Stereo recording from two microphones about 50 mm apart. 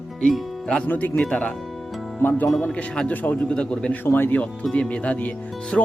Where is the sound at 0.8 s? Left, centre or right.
Left.